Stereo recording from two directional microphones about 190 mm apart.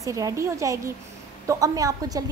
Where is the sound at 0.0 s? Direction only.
15° right (ahead or behind).